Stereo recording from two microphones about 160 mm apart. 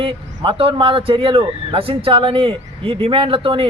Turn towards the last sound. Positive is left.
turn(degrees=-35)  # may be behind; listen again after turning